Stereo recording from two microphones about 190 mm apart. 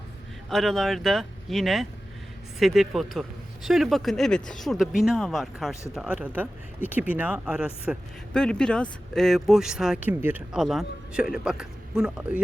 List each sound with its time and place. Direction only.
0.5 s speech: centre (ahead or behind)